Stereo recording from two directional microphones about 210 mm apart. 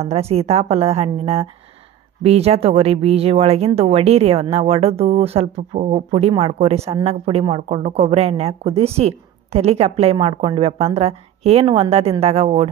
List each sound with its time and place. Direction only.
0.0 s speech: 30° right (ahead or behind)